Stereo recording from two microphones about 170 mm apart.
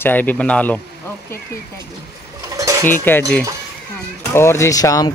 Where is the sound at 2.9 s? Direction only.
10° left (ahead or behind).